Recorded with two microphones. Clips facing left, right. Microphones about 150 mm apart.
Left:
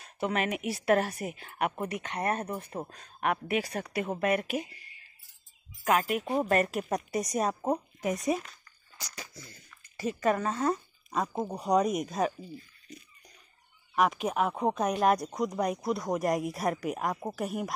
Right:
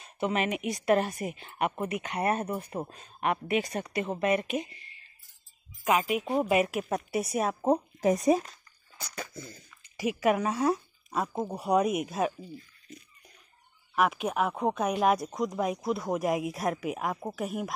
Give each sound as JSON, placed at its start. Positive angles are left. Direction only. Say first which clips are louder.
{"t": 0.0, "sound": "speech", "louder": "right 1 dB", "side_deg": 0}
{"t": 5.9, "sound": "speech", "louder": "right 1 dB", "side_deg": -5}
{"t": 8.0, "sound": "speech", "louder": "right 6 dB", "side_deg": -35}
{"t": 9.0, "sound": "speech", "louder": "right 6 dB", "side_deg": -55}
{"t": 9.7, "sound": "speech", "louder": "right 2 dB", "side_deg": -10}
{"t": 13.9, "sound": "speech", "louder": "even", "side_deg": 0}